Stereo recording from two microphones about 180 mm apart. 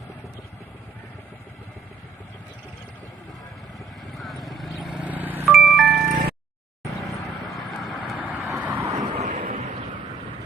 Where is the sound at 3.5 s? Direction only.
Centre (ahead or behind).